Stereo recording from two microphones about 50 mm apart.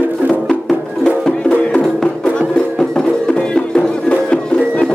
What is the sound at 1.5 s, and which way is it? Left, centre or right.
Music, centre.